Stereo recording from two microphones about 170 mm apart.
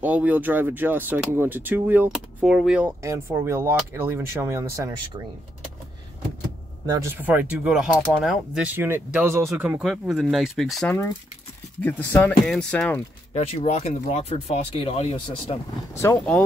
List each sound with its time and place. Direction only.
0.0 s speech: 10° right (ahead or behind)
3.0 s speech: 15° right (ahead or behind)
6.9 s speech: 15° right (ahead or behind); by 10.9 s centre (ahead or behind)
10.9 s speech: 15° left (ahead or behind)
13.3 s speech: 40° left (ahead or behind)